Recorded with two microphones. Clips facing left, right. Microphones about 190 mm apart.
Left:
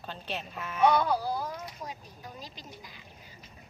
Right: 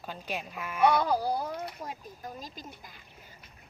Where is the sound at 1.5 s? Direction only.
60° right (ahead or behind).